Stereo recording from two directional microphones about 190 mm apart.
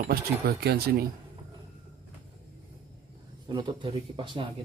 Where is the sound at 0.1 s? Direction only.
55° right (ahead or behind).